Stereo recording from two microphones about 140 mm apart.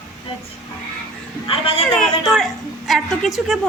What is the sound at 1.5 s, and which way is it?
Speech, 40° left (ahead or behind).